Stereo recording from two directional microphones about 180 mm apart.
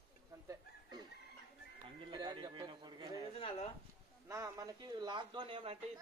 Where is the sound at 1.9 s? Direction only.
25° right (ahead or behind).